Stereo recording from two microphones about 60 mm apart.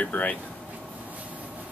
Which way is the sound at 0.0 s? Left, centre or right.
Left.